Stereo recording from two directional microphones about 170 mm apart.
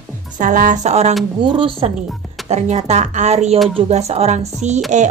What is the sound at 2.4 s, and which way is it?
Speech, 40° right (ahead or behind).